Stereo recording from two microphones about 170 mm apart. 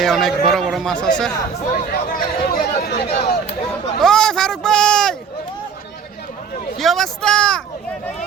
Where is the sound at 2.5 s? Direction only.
65° left (ahead or behind).